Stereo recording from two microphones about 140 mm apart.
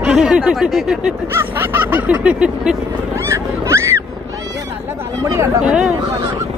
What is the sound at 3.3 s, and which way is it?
Wild animals, 20° right (ahead or behind).